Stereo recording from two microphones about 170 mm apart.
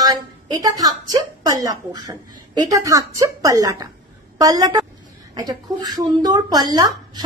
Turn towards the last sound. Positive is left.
turn(degrees=-20)  # may be behind; listen again after turning